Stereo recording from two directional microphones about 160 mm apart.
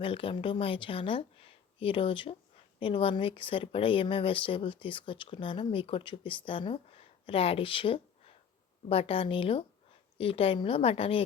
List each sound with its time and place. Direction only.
0.0 s speech: 35° left (ahead or behind)